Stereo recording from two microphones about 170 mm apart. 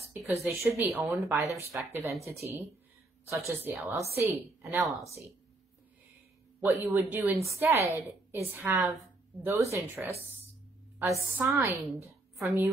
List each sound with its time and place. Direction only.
0.1 s speech: 15° right (ahead or behind)
3.3 s speech: 15° right (ahead or behind)
6.6 s a woman's voice: 15° right (ahead or behind)